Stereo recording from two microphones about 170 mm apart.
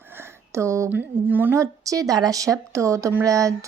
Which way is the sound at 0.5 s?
15° right (ahead or behind).